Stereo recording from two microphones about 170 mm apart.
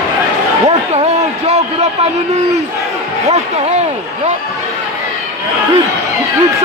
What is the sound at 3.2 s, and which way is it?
Speech, 40° right (ahead or behind).